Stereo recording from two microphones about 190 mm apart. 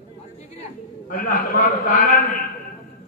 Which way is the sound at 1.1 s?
45° left (ahead or behind).